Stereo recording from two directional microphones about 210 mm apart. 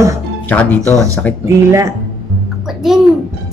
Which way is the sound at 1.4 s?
15° right (ahead or behind).